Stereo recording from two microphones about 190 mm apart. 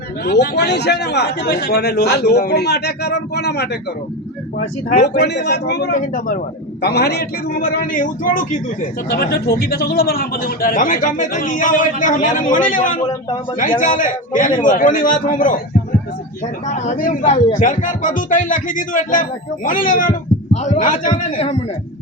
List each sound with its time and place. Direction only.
0.3 s a man's voice: 60° left (ahead or behind)
5.9 s speech: 45° left (ahead or behind)
6.8 s speech: 60° left (ahead or behind)
16.6 s speech: 40° left (ahead or behind)